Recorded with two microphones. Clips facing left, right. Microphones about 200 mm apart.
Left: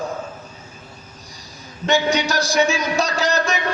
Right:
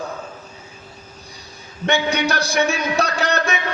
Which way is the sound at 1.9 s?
60° right (ahead or behind).